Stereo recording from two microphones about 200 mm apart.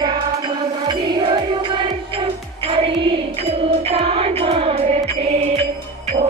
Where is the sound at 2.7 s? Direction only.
30° right (ahead or behind).